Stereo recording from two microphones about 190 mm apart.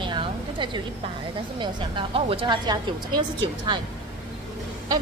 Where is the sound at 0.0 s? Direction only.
25° right (ahead or behind).